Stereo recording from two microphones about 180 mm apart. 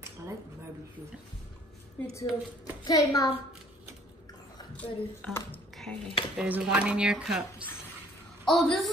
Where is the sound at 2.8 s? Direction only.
20° left (ahead or behind).